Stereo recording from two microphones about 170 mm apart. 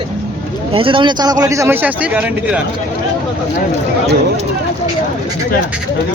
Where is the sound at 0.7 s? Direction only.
30° right (ahead or behind); by 2.5 s 10° right (ahead or behind).